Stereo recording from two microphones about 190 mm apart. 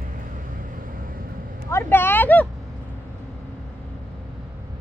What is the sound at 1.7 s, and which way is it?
Speech, 15° left (ahead or behind).